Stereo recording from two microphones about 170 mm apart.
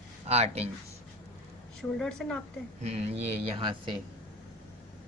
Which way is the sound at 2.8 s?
40° right (ahead or behind).